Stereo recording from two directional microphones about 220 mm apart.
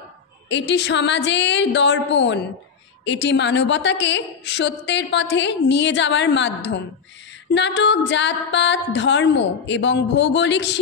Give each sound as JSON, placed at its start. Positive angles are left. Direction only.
{"t": 0.5, "sound": "a woman's voice", "side_deg": 55}